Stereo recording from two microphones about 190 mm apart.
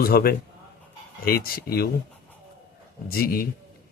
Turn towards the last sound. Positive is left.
turn(degrees=50)  # may be behind; listen again after turning